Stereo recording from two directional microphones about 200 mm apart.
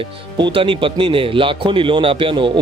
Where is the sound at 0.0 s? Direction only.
25° right (ahead or behind).